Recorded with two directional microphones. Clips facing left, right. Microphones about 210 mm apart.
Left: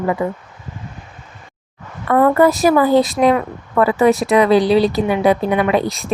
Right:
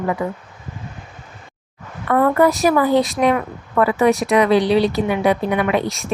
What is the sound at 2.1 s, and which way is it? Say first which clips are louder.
A woman's voice: left 2 dB; 30° left (ahead or behind).